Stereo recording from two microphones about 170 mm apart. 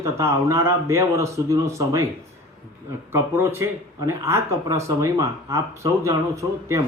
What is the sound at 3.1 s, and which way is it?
Speech, 15° right (ahead or behind).